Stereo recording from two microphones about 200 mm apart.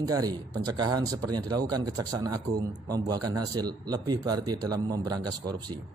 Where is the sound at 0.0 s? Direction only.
20° right (ahead or behind).